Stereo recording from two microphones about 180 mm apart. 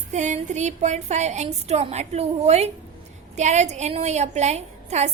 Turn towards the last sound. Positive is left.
turn(degrees=-40)  # may be behind; listen again after turning